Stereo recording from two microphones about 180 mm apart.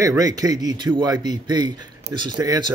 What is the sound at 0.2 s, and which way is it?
Speech, 20° right (ahead or behind).